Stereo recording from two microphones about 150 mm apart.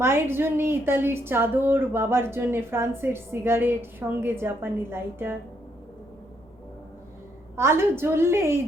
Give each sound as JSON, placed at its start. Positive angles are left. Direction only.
{"t": 0.0, "sound": "a woman's voice", "side_deg": -15}
{"t": 7.5, "sound": "a woman's voice", "side_deg": -15}